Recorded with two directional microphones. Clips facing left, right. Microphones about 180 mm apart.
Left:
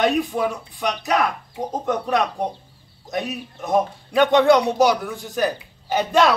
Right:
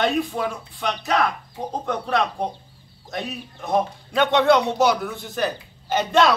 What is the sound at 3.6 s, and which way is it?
Speech, 15° left (ahead or behind).